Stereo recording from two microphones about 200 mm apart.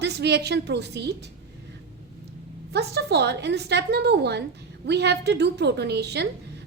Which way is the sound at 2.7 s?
55° right (ahead or behind).